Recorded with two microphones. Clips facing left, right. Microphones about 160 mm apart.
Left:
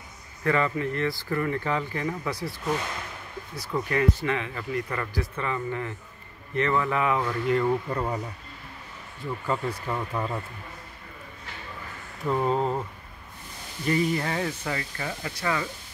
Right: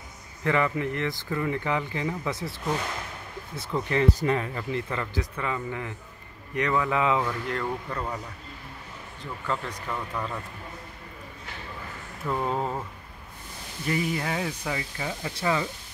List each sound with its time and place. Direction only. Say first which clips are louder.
0.4 s speech: even; 20° right (ahead or behind)
3.5 s speech: even; 25° right (ahead or behind)
4.2 s speech: right 2 dB; 40° right (ahead or behind)
4.6 s speech: even; 25° right (ahead or behind)
7.2 s speech: left 6 dB; 5° left (ahead or behind)
7.9 s speech: left 4 dB; 25° left (ahead or behind)
9.2 s speech: left 3 dB; 10° left (ahead or behind)
12.3 s speech: left 3 dB; 5° left (ahead or behind)
13.8 s speech: left 3 dB; 5° right (ahead or behind); by 15.7 s 20° right (ahead or behind)